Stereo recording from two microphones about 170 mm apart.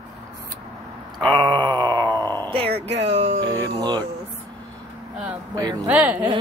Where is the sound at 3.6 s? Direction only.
25° right (ahead or behind).